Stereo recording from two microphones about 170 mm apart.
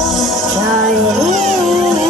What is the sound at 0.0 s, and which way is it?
Music, centre (ahead or behind).